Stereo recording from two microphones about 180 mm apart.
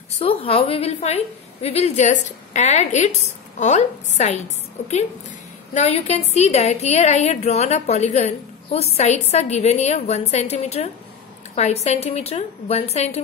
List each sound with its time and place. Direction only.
0.2 s a woman's voice: 30° left (ahead or behind)